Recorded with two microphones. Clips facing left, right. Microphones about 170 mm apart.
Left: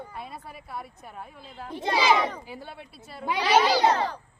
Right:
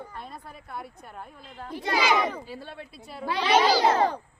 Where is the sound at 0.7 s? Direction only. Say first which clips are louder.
Even; centre (ahead or behind).